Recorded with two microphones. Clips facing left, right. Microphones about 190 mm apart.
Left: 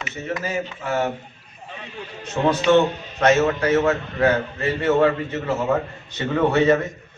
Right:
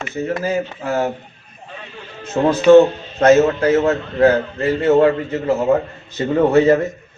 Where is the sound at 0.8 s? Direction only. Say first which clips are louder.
Right 2 dB; 35° right (ahead or behind).